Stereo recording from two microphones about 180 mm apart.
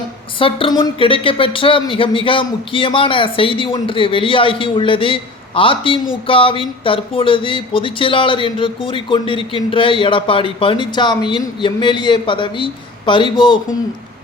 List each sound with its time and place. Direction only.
0.3 s speech: 30° left (ahead or behind)